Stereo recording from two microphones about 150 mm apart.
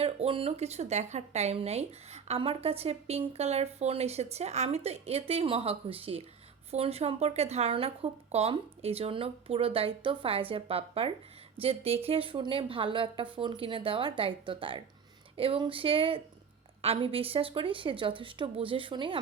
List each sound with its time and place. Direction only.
0.0 s speech: 40° right (ahead or behind)